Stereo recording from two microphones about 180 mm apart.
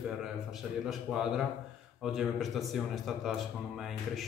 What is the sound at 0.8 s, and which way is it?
A man's voice, 5° right (ahead or behind).